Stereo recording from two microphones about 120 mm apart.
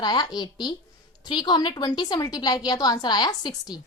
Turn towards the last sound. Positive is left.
turn(degrees=35)  # may be behind; listen again after turning